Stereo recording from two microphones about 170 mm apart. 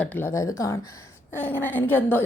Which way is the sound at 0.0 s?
10° left (ahead or behind).